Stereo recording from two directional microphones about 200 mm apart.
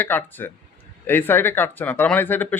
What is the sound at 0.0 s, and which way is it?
Speech, 10° left (ahead or behind).